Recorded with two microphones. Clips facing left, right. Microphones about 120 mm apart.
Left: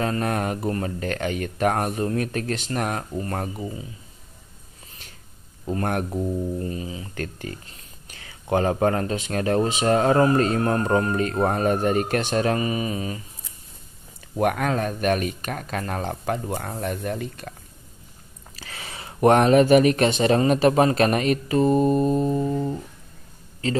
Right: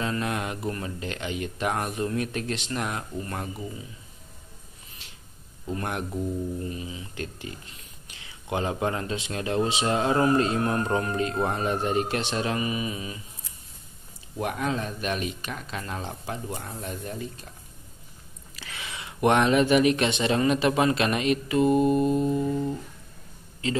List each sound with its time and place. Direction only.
0.0 s speech: 45° left (ahead or behind)
5.7 s speech: 45° left (ahead or behind)
14.4 s speech: 60° left (ahead or behind)
18.6 s a sound: 40° left (ahead or behind)
19.2 s speech: 40° left (ahead or behind)
23.6 s speech: 40° left (ahead or behind)